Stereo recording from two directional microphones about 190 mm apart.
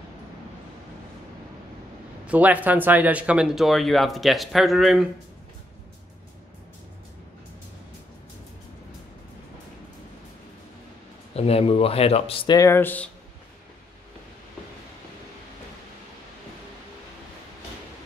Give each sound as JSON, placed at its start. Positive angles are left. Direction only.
{"t": 2.2, "sound": "speech", "side_deg": -10}
{"t": 11.3, "sound": "speech", "side_deg": 30}
{"t": 12.5, "sound": "speech", "side_deg": 15}